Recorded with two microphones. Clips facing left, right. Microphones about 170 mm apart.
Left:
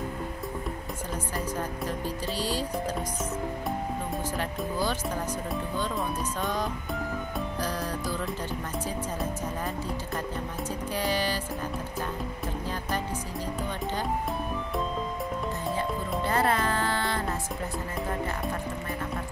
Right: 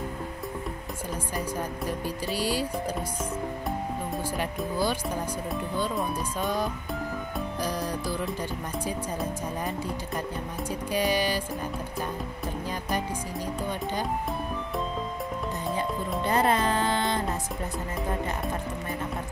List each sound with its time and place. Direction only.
1.9 s music: 10° right (ahead or behind)
4.4 s music: 10° right (ahead or behind)
6.4 s music: 10° right (ahead or behind)
10.9 s music: 15° right (ahead or behind)
16.3 s music: 20° right (ahead or behind)